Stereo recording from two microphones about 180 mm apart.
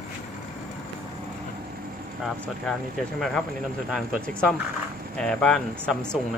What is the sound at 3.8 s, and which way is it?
Speech, centre (ahead or behind).